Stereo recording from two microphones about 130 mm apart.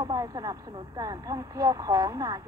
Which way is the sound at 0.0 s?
25° right (ahead or behind).